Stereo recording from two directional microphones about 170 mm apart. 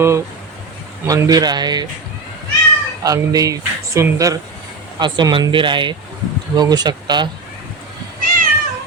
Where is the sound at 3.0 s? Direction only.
20° right (ahead or behind).